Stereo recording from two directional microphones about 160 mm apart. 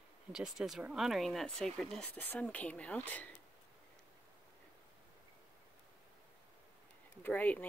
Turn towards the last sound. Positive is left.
turn(degrees=10)  # may be behind; listen again after turning